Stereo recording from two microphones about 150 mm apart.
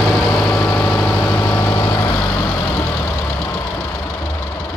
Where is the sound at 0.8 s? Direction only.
10° left (ahead or behind).